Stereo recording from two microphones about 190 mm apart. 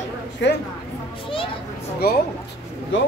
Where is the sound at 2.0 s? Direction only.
55° left (ahead or behind).